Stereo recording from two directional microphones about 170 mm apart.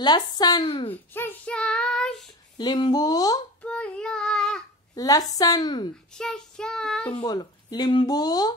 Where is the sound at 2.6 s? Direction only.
25° left (ahead or behind).